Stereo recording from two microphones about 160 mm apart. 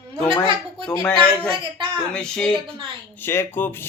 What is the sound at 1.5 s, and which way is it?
Speech, 30° right (ahead or behind).